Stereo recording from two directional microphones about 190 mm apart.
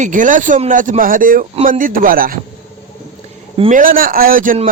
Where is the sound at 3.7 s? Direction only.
45° right (ahead or behind).